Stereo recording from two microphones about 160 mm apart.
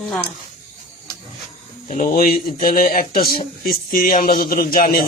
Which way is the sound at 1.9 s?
55° left (ahead or behind).